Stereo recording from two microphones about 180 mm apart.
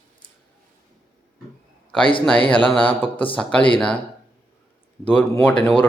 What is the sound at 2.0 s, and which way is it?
A man's voice, 30° left (ahead or behind).